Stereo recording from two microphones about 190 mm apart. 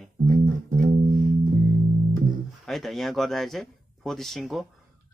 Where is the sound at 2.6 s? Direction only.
Centre (ahead or behind).